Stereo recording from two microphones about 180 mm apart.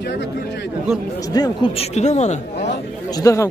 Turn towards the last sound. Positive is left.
turn(degrees=20)  # may be behind; listen again after turning